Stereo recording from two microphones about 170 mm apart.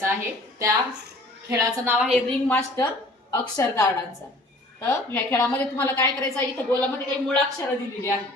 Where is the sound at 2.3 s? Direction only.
10° left (ahead or behind).